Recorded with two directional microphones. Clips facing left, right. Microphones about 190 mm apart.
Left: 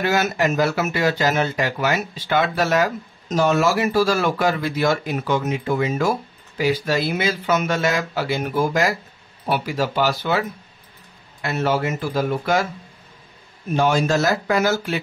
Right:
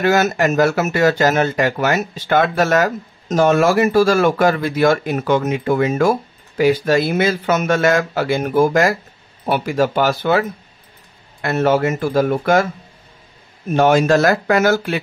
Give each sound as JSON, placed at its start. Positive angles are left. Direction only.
{"t": 0.0, "sound": "speech", "side_deg": -50}
{"t": 11.4, "sound": "speech", "side_deg": -55}
{"t": 13.7, "sound": "speech", "side_deg": -60}